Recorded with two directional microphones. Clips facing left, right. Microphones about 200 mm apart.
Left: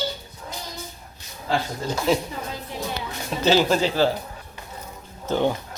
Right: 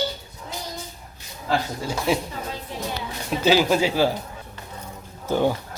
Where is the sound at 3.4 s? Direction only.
10° right (ahead or behind).